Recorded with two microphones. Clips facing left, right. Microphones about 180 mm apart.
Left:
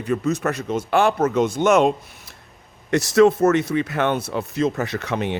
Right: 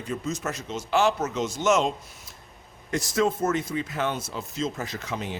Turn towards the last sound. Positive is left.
turn(degrees=65)  # may be behind; listen again after turning